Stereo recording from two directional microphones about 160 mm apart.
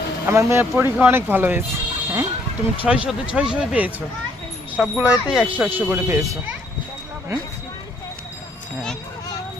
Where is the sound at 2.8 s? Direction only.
5° right (ahead or behind).